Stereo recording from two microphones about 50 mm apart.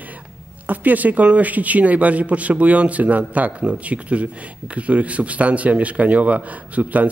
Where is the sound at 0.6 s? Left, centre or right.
Right.